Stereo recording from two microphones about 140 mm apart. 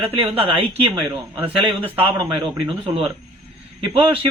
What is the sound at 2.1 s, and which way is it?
Speech, 30° right (ahead or behind).